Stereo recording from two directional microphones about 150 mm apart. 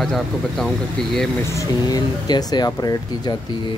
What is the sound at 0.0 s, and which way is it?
Speech, centre (ahead or behind).